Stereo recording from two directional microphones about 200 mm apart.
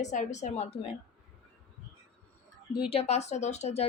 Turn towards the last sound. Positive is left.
turn(degrees=35)  # may be behind; listen again after turning